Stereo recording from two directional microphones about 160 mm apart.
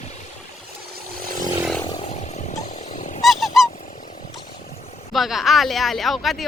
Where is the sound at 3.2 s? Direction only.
Centre (ahead or behind).